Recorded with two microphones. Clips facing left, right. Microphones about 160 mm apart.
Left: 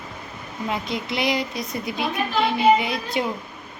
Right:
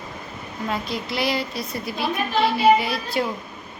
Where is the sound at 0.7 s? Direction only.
20° left (ahead or behind).